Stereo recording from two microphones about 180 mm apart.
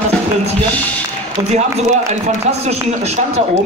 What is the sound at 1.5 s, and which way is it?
A man's voice, 40° right (ahead or behind).